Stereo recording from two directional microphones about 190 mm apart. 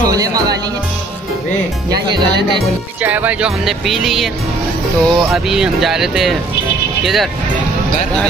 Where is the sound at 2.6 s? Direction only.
10° right (ahead or behind).